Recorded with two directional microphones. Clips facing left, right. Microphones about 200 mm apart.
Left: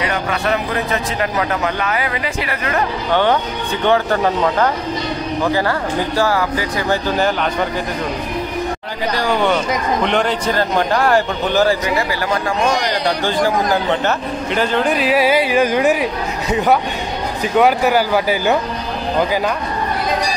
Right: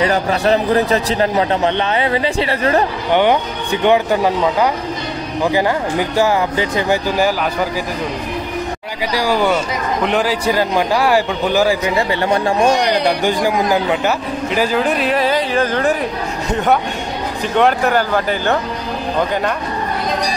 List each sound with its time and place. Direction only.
0.0 s a man's voice: 35° right (ahead or behind)
3.1 s a man's voice: 15° right (ahead or behind)
7.1 s a man's voice: 10° right (ahead or behind)
9.1 s a man's voice: 5° right (ahead or behind)
12.1 s speech: 25° right (ahead or behind)
13.0 s speech: 15° right (ahead or behind); by 18.6 s 10° left (ahead or behind)